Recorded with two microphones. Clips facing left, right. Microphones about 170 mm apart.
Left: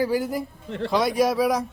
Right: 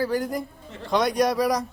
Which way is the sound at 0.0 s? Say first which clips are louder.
Left 2 dB; 5° left (ahead or behind).